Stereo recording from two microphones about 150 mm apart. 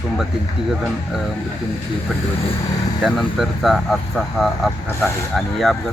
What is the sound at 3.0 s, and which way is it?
Speech, centre (ahead or behind).